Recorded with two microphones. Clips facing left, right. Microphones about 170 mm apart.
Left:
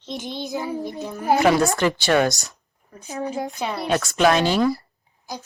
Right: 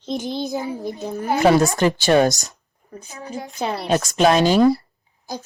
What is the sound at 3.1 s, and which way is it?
Speech, 35° left (ahead or behind).